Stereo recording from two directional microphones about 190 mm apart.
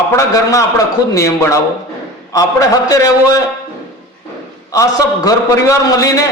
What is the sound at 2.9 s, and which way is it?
Speech, 15° left (ahead or behind).